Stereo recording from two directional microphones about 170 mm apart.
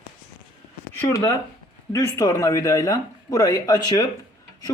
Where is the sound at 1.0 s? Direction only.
15° left (ahead or behind).